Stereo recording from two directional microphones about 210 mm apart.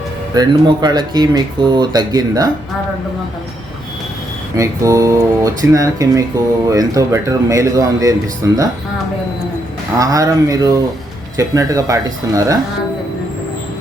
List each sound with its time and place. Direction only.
0.3 s speech: 20° right (ahead or behind)
4.5 s a man's voice: 15° right (ahead or behind)
10.0 s a man's voice: 15° right (ahead or behind)